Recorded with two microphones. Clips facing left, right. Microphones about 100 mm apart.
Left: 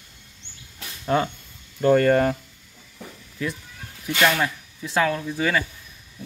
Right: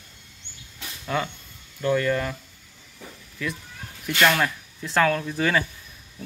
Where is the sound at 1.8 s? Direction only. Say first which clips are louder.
Left 6 dB; 45° left (ahead or behind).